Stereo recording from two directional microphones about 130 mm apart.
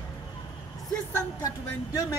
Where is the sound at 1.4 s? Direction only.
25° left (ahead or behind).